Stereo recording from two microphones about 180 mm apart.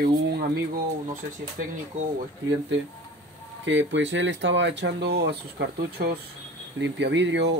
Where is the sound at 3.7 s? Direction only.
90° right; by 6.2 s 65° right (ahead or behind).